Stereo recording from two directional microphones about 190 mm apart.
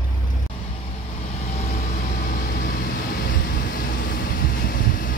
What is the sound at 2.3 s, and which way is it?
Vehicle, 50° left (ahead or behind).